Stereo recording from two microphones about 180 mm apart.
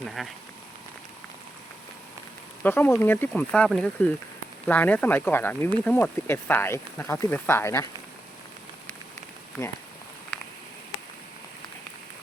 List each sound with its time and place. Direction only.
0.2 s speech: centre (ahead or behind)
2.6 s speech: 10° left (ahead or behind)